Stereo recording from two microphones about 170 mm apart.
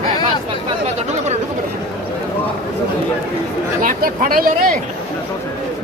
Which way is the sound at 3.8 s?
50° right (ahead or behind).